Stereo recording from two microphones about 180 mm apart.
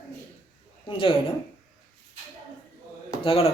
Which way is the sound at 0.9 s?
30° left (ahead or behind).